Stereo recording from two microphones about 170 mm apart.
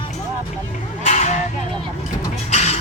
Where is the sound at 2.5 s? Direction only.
40° left (ahead or behind).